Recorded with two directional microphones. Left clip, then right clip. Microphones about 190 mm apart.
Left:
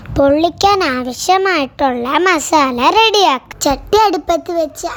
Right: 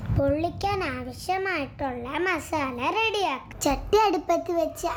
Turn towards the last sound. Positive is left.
turn(degrees=25)  # may be behind; listen again after turning